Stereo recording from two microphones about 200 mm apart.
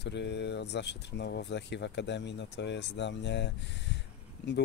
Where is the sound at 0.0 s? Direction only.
60° left (ahead or behind).